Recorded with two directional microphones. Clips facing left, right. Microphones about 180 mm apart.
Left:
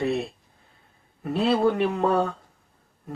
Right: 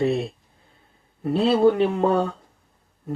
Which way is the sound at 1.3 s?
25° right (ahead or behind).